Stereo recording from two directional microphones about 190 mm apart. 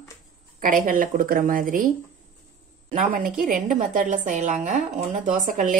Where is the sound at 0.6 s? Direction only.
45° right (ahead or behind).